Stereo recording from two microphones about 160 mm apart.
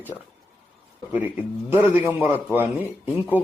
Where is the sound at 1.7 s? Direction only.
10° right (ahead or behind).